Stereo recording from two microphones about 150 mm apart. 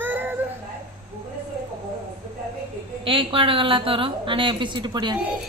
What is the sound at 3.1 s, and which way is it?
A woman's voice, 35° right (ahead or behind).